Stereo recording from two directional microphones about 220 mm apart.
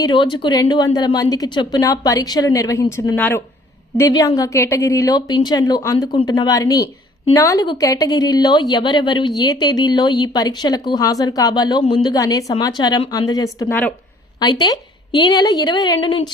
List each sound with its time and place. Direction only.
0.0 s a woman's voice: 20° left (ahead or behind)